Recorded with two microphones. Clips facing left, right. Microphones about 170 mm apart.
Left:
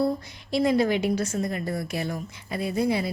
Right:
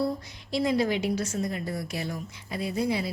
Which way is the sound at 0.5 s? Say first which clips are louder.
Left 3 dB; 55° left (ahead or behind).